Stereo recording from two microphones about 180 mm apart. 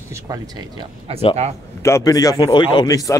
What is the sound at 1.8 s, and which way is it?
A man's voice, 15° left (ahead or behind).